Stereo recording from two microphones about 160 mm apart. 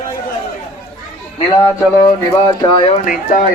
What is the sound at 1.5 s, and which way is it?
Speech, 25° left (ahead or behind).